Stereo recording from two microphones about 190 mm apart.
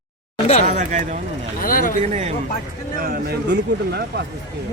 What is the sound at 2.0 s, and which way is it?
Speech, 35° right (ahead or behind).